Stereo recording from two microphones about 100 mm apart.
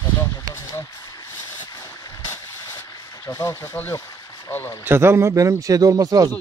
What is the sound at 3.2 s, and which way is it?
Speech, 30° left (ahead or behind).